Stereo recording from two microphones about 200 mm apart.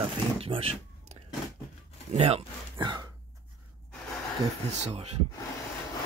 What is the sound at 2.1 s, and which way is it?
Speech, 30° right (ahead or behind).